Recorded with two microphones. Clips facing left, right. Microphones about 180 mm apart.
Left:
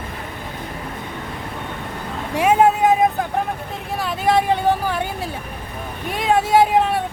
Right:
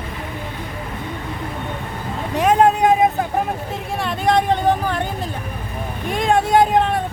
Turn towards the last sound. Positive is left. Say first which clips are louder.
# even
turn(degrees=5)  # may be behind; listen again after turning